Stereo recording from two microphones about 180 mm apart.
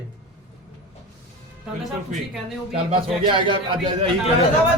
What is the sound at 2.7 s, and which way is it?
A man's voice, 30° right (ahead or behind).